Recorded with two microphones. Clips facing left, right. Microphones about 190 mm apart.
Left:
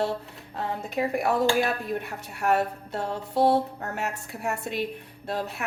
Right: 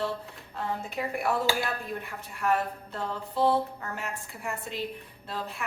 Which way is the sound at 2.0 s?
70° left (ahead or behind).